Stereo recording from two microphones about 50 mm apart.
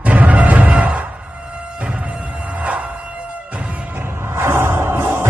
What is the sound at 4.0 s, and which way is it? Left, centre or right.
Music, right.